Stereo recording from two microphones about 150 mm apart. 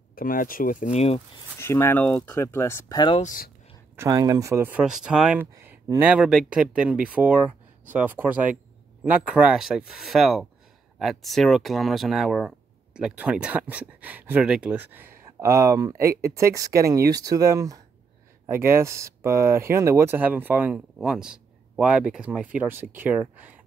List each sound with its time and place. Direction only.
0.1 s speech: 70° left (ahead or behind)
0.9 s speech: 45° left (ahead or behind)
1.6 s speech: 15° left (ahead or behind)
3.9 s speech: 20° right (ahead or behind)